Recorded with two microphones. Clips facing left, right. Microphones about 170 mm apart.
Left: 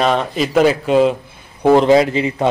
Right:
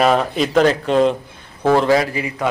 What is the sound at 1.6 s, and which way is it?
Speech, 15° left (ahead or behind).